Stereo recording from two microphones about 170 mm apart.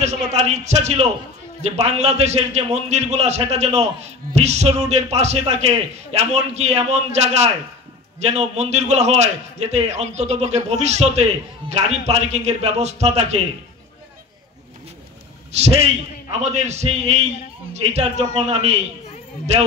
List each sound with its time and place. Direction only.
0.0 s a man's voice: 40° right (ahead or behind)
15.5 s a man's voice: 40° right (ahead or behind)